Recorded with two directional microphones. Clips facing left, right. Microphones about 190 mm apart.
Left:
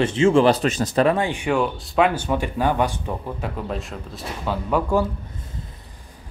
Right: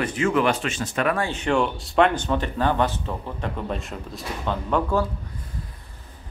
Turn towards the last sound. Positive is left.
turn(degrees=10)  # may be behind; listen again after turning